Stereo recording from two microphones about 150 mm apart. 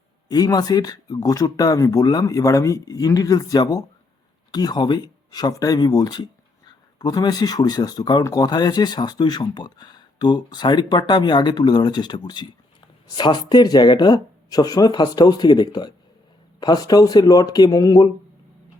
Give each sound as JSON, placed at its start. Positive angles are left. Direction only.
{"t": 0.3, "sound": "speech", "side_deg": 25}